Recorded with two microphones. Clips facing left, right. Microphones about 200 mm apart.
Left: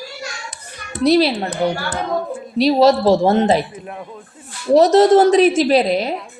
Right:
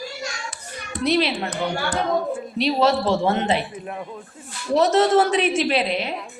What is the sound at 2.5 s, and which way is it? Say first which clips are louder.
A woman's voice: left 7 dB; 40° left (ahead or behind).